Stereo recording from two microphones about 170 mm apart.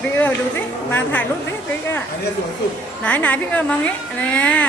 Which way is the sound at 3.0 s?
10° left (ahead or behind).